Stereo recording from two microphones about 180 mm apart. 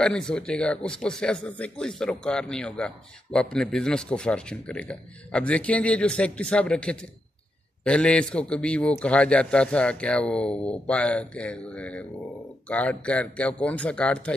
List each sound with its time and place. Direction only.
0.0 s a man's voice: 5° left (ahead or behind)